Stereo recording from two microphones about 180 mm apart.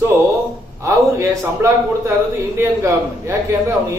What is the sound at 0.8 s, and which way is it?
A man's voice, 15° right (ahead or behind).